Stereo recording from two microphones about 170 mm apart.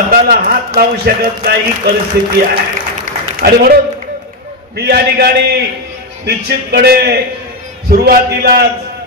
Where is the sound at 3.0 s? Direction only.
60° right (ahead or behind).